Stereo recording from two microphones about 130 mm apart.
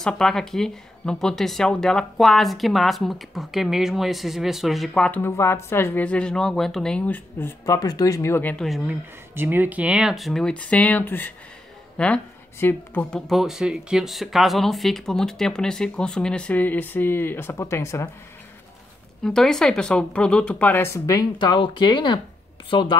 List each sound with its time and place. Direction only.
0.0 s speech: 5° left (ahead or behind)
7.6 s speech: 30° left (ahead or behind); by 8.6 s 15° left (ahead or behind)
8.6 s speech: centre (ahead or behind)
9.3 s speech: 15° right (ahead or behind); by 13.2 s 15° left (ahead or behind)
13.3 s speech: centre (ahead or behind); by 18.1 s 20° left (ahead or behind)
19.2 s speech: 5° left (ahead or behind); by 21.3 s 25° left (ahead or behind)
21.4 s speech: 40° left (ahead or behind)